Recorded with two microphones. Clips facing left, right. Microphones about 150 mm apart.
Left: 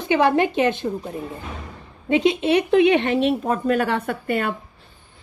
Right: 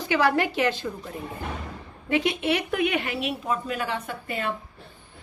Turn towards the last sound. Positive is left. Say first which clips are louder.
# left 7 dB
turn(degrees=60)  # may be behind; listen again after turning